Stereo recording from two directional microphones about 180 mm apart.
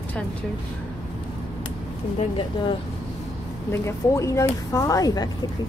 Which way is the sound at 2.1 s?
30° left (ahead or behind).